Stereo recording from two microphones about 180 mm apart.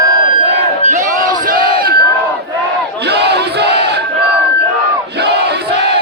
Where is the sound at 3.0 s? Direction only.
65° right (ahead or behind).